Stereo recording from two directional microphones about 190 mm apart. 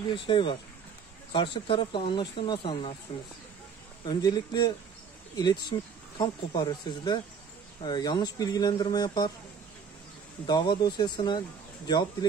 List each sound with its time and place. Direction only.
0.1 s speech: 25° left (ahead or behind)
4.0 s speech: 20° left (ahead or behind)
10.4 s speech: 20° left (ahead or behind)